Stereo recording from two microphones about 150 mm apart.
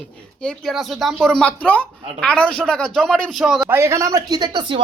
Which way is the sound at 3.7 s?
20° right (ahead or behind).